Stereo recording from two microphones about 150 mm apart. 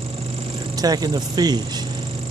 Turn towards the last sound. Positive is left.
turn(degrees=-25)  # may be behind; listen again after turning